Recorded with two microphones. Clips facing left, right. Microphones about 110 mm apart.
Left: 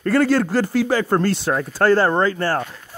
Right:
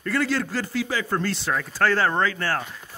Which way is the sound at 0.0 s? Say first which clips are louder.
Left 8 dB; 45° left (ahead or behind).